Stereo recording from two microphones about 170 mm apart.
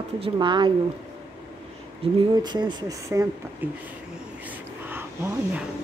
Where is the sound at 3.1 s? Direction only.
15° right (ahead or behind).